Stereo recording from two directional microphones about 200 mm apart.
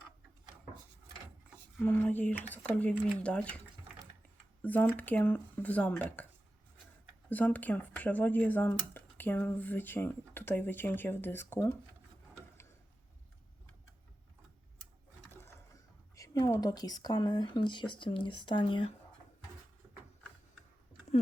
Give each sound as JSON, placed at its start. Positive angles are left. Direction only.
{"t": 1.8, "sound": "speech", "side_deg": 10}
{"t": 4.6, "sound": "speech", "side_deg": 10}
{"t": 7.3, "sound": "speech", "side_deg": 10}
{"t": 16.1, "sound": "speech", "side_deg": 15}